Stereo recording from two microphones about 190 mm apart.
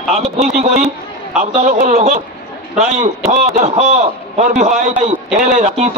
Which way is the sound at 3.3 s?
35° right (ahead or behind).